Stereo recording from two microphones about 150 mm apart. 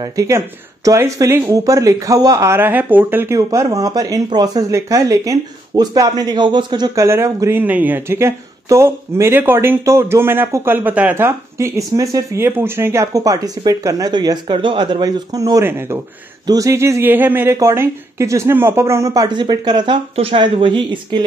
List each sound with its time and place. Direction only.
0.0 s speech: 20° right (ahead or behind)
3.3 s speech: 25° right (ahead or behind)
20.2 s speech: 40° right (ahead or behind)